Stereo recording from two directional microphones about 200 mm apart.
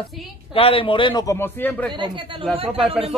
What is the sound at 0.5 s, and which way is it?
A man's voice, 30° left (ahead or behind).